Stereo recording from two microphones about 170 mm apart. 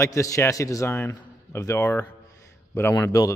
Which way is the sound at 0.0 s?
20° left (ahead or behind).